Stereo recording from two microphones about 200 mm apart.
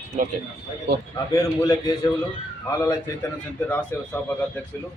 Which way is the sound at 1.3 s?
15° left (ahead or behind).